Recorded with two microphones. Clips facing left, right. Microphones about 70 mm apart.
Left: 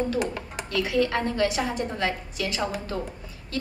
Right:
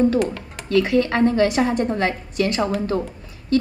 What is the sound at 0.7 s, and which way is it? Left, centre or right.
A woman's voice, right.